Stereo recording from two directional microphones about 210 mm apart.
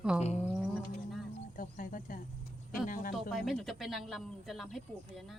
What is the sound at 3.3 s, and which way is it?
Speech, centre (ahead or behind).